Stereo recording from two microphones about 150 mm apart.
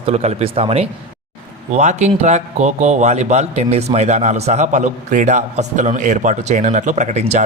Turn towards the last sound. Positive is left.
turn(degrees=-50)  # may be behind; listen again after turning